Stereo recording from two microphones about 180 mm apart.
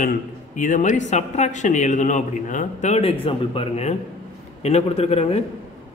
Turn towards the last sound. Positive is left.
turn(degrees=35)  # may be behind; listen again after turning